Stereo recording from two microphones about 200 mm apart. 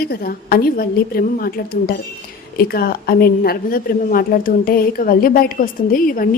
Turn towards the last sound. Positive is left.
turn(degrees=45)  # may be behind; listen again after turning